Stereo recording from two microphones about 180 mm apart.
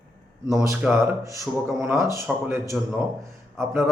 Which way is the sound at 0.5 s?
15° right (ahead or behind).